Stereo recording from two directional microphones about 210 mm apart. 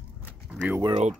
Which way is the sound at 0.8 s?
25° right (ahead or behind).